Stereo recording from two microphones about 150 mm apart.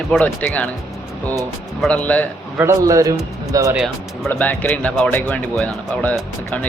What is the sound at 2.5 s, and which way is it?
A man's voice, 20° right (ahead or behind).